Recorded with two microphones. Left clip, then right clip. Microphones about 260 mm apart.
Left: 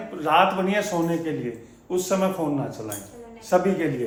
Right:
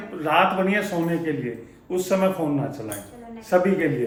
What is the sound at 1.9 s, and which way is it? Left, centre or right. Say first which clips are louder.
Speech: right 2 dB; centre.